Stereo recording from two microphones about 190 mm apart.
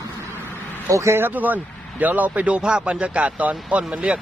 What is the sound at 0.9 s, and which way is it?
Speech, 15° right (ahead or behind).